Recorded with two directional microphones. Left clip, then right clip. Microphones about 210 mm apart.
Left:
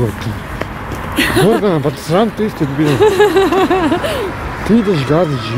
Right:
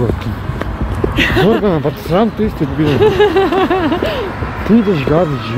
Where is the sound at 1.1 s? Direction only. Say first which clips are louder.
Left 1 dB; 30° left (ahead or behind).